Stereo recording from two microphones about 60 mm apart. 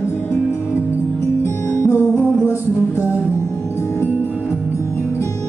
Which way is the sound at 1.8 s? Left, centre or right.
Left.